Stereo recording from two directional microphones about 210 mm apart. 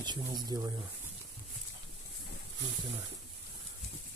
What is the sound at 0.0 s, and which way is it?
Speech, 20° right (ahead or behind).